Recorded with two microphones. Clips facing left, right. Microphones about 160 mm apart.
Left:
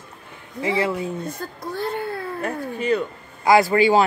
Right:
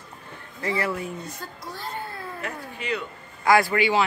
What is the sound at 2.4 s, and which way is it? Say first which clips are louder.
Speech: left 8 dB; 40° left (ahead or behind).